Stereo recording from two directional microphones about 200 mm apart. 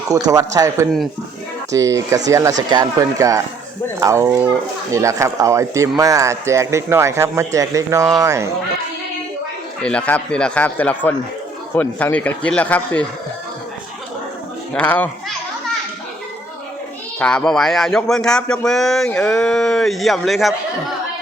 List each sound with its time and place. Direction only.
0.3 s speech: 20° right (ahead or behind)
9.8 s speech: 5° left (ahead or behind)
14.7 s speech: 5° left (ahead or behind)
17.2 s speech: 5° left (ahead or behind)